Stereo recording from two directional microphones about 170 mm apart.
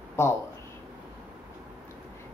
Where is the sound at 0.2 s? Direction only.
15° left (ahead or behind).